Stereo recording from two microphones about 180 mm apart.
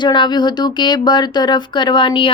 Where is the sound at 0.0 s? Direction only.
25° left (ahead or behind).